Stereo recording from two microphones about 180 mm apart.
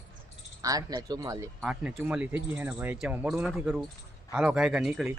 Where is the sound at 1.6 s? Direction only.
5° right (ahead or behind).